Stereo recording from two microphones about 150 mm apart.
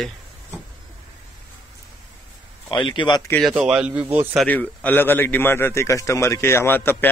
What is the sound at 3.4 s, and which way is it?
Speech, 5° right (ahead or behind).